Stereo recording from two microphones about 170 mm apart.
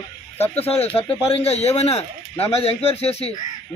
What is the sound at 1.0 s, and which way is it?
Speech, 35° left (ahead or behind).